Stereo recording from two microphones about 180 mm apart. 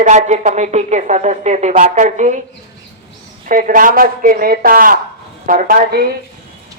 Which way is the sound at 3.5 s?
50° right (ahead or behind).